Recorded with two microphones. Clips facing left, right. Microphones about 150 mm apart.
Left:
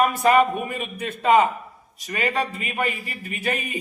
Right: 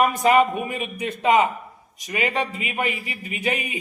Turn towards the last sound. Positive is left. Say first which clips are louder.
# right 1 dB
turn(degrees=-15)  # may be behind; listen again after turning